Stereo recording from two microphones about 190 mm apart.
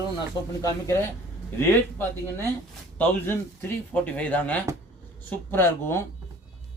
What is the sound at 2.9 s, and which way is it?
Speech, 10° left (ahead or behind).